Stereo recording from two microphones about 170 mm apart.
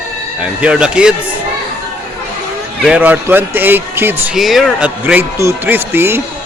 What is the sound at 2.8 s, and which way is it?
Speech, 10° right (ahead or behind).